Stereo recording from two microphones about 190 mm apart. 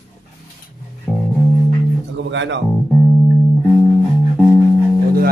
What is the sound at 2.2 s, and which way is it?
Music, 75° right (ahead or behind).